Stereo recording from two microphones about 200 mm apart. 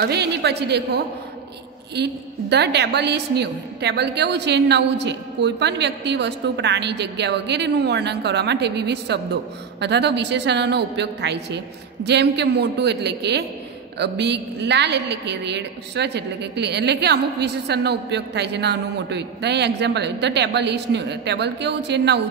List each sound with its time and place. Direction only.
0.0 s a woman's voice: 55° right (ahead or behind)